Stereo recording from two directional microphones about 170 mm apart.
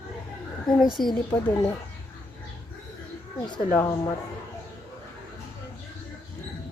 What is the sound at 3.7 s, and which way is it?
Speech, 15° left (ahead or behind).